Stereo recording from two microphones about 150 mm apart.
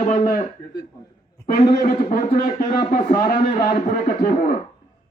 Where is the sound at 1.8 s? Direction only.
70° left (ahead or behind).